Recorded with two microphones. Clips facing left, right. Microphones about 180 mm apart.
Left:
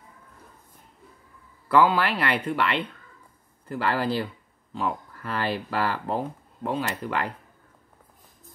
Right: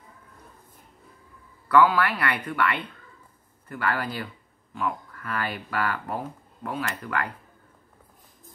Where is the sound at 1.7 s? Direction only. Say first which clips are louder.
Even; 25° left (ahead or behind).